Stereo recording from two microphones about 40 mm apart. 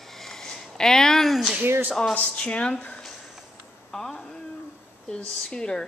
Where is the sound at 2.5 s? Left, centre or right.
Left.